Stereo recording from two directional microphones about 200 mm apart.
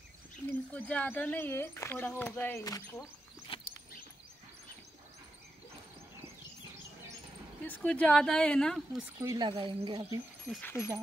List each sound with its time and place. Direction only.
0.5 s speech: 10° left (ahead or behind)
3.5 s a sound: 25° left (ahead or behind)
7.6 s a woman's voice: 5° left (ahead or behind)
9.2 s speech: 15° right (ahead or behind)
9.5 s speech: 25° right (ahead or behind)
10.5 s speech: 10° left (ahead or behind)